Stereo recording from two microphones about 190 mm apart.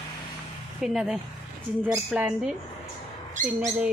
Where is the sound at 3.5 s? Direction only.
15° right (ahead or behind).